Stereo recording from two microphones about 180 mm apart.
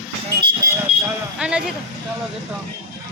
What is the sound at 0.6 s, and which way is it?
Smoke detector, 20° right (ahead or behind).